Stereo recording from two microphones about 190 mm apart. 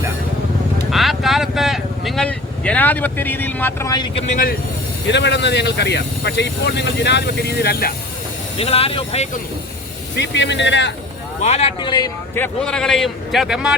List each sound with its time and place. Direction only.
0.9 s speech: centre (ahead or behind); by 4.2 s 20° left (ahead or behind)
4.3 s speech: 45° left (ahead or behind)
5.0 s speech: 65° left (ahead or behind)
8.5 s speech: 30° left (ahead or behind)
10.2 s speech: 65° left (ahead or behind)
11.4 s speech: 35° left (ahead or behind)
12.3 s a man's voice: 10° left (ahead or behind)